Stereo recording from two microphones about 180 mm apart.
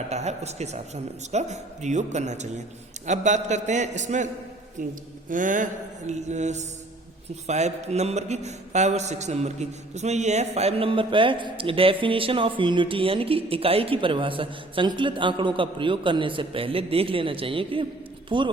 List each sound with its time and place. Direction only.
0.1 s speech: 40° right (ahead or behind)
4.8 s mantra: 45° right (ahead or behind)
6.1 s a man's voice: 40° right (ahead or behind)